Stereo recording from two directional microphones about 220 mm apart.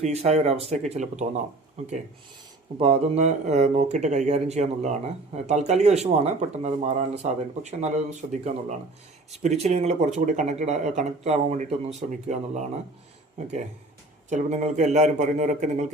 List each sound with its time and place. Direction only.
0.0 s speech: 30° right (ahead or behind)
2.7 s speech: 25° right (ahead or behind)
14.3 s speech: 30° right (ahead or behind)